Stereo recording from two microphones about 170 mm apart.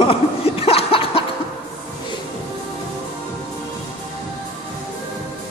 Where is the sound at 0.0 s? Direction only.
35° left (ahead or behind).